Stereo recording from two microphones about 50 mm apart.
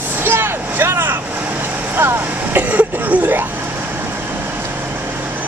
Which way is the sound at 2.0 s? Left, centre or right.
Right.